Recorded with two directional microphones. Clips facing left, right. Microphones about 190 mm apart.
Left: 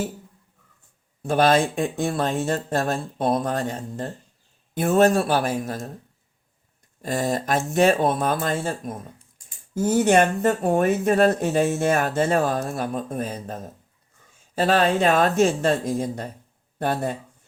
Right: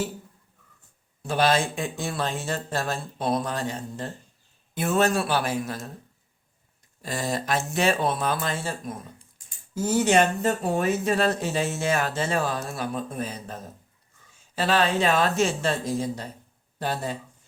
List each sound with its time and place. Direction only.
1.2 s speech: 50° left (ahead or behind)
7.0 s speech: 50° left (ahead or behind)